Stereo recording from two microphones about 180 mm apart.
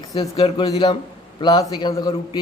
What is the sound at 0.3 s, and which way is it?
Speech, 35° left (ahead or behind).